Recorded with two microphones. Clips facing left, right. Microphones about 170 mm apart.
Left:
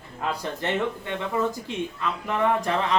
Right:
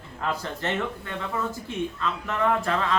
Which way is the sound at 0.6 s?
15° left (ahead or behind).